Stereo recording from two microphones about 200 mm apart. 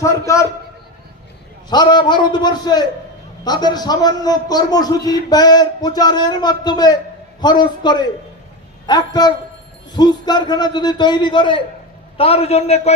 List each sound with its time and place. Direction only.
0.0 s a man's voice: 15° left (ahead or behind)
1.7 s a man's voice: 20° left (ahead or behind)